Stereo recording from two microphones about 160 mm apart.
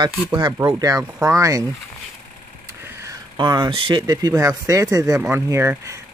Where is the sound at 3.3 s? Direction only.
25° right (ahead or behind).